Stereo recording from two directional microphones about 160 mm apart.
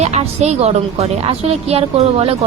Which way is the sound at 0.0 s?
45° right (ahead or behind).